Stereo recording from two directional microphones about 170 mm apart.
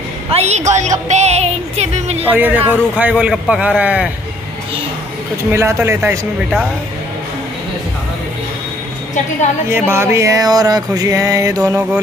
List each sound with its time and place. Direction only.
0.3 s speech: 40° right (ahead or behind)
2.2 s a man's voice: 10° right (ahead or behind)
5.5 s a man's voice: 15° right (ahead or behind)
9.7 s a sound: 15° right (ahead or behind)